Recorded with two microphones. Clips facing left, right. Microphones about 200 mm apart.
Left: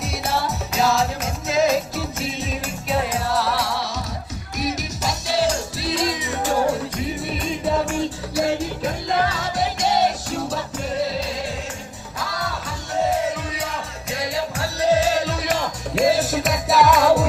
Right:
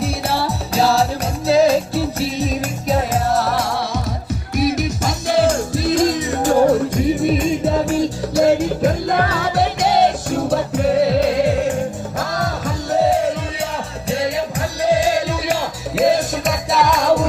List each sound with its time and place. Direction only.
0.0 s music: 30° right (ahead or behind)
3.1 s music: 45° right (ahead or behind)
7.9 s music: 40° right (ahead or behind); by 11.8 s 60° right (ahead or behind)
12.2 s music: 45° right (ahead or behind)
14.1 s music: 25° right (ahead or behind)
16.0 s music: centre (ahead or behind)